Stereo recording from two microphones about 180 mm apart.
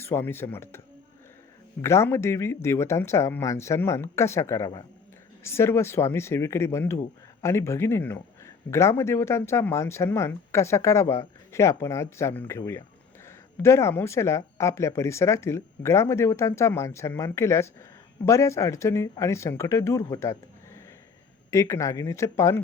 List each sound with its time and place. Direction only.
0.0 s speech: 15° left (ahead or behind)
1.8 s speech: 15° left (ahead or behind)
21.5 s speech: 15° left (ahead or behind)